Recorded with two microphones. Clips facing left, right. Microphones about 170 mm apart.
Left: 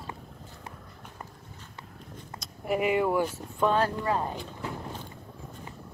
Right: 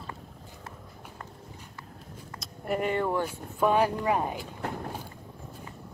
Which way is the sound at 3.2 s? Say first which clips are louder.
Even; 10° right (ahead or behind).